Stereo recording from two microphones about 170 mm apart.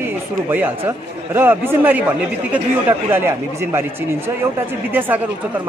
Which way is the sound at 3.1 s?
15° right (ahead or behind).